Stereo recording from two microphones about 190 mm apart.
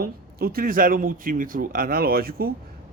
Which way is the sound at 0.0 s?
50° right (ahead or behind).